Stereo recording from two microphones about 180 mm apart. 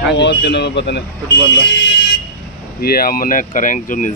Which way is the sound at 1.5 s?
80° left.